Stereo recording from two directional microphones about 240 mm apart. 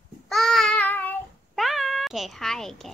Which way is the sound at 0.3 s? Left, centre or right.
Centre.